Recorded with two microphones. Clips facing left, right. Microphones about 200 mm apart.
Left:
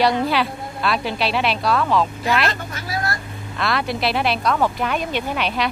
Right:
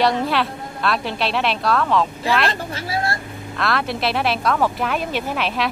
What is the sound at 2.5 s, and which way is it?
Speech, 30° right (ahead or behind).